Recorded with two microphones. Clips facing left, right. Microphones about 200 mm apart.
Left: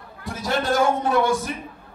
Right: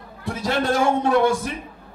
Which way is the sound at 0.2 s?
30° right (ahead or behind).